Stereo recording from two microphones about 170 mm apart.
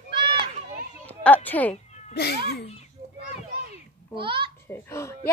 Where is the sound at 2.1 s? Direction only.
70° left (ahead or behind).